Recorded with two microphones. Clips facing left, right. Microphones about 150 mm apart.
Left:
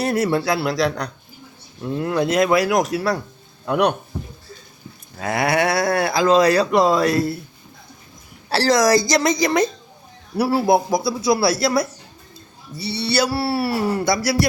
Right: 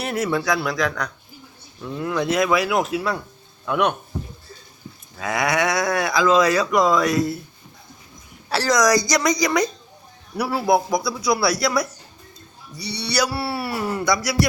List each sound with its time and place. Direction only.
0.0 s speech: 35° left (ahead or behind)
5.1 s speech: 35° left (ahead or behind)
8.4 s speech: 30° left (ahead or behind)